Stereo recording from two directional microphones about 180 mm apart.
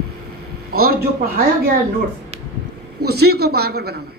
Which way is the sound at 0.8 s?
55° right (ahead or behind).